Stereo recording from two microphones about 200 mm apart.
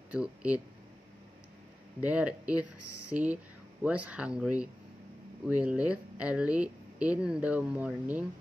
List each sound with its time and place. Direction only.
0.1 s speech: 5° right (ahead or behind)
2.0 s speech: 5° right (ahead or behind)